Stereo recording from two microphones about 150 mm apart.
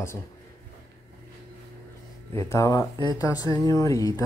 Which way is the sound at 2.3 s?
20° left (ahead or behind).